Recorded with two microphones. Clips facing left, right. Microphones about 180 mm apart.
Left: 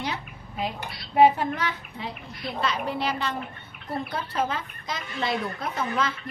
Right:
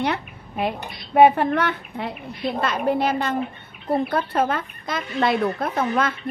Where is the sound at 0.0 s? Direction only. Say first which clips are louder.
Right 8 dB; 60° right (ahead or behind).